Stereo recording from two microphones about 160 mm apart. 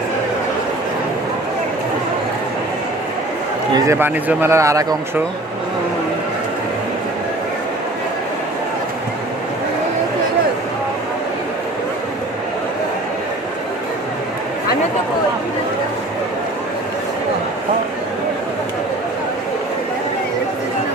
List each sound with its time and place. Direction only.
3.8 s a man's voice: 15° right (ahead or behind)